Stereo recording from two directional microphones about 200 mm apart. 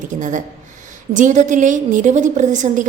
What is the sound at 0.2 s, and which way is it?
A woman's voice, 40° right (ahead or behind).